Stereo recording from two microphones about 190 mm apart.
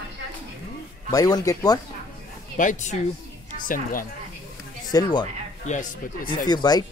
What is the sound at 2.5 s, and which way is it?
Speech, 40° left (ahead or behind).